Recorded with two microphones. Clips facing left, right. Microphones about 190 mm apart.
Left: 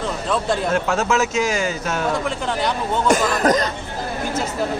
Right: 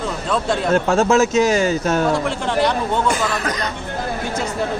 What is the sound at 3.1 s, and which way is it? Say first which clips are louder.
Speech: left 5 dB; 45° left (ahead or behind).